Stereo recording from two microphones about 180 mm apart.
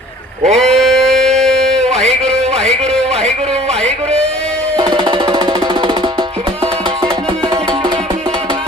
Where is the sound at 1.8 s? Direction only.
35° right (ahead or behind).